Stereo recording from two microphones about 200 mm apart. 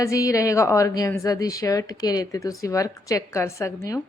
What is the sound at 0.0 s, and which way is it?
Speech, 15° left (ahead or behind).